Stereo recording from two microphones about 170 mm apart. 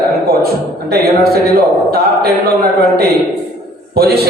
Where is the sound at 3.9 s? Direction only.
65° right (ahead or behind).